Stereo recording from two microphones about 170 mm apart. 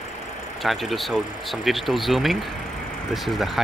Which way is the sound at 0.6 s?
Centre (ahead or behind).